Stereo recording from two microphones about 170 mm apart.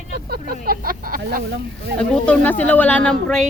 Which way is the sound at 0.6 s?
60° right (ahead or behind).